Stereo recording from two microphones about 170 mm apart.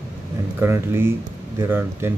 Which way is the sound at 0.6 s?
15° right (ahead or behind).